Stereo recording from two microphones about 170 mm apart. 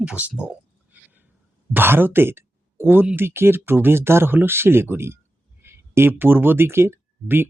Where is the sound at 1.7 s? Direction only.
10° right (ahead or behind).